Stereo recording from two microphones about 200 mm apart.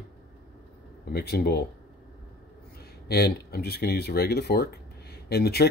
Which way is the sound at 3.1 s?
50° left (ahead or behind).